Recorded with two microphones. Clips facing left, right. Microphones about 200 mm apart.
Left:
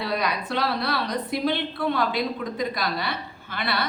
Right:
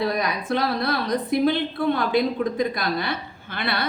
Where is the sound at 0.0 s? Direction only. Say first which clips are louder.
Right 3 dB; 45° right (ahead or behind).